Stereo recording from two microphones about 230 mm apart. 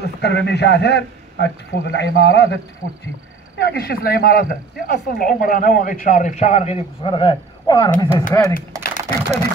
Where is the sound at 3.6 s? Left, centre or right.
Left; by 8.5 s centre.